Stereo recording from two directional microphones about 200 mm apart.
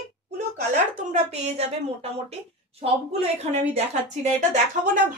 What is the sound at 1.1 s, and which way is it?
Speech, 30° right (ahead or behind).